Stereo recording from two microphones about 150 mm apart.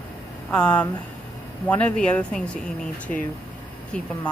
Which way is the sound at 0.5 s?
5° left (ahead or behind).